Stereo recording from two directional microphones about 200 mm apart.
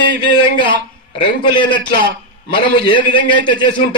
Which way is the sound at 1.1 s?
25° left (ahead or behind).